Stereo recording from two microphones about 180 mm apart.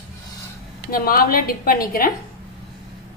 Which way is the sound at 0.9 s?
55° left (ahead or behind).